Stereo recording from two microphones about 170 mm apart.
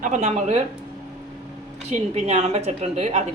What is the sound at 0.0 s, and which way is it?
Speech, 45° right (ahead or behind).